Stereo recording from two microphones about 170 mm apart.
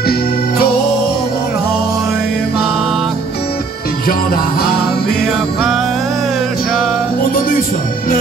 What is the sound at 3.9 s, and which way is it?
Music, 60° left (ahead or behind).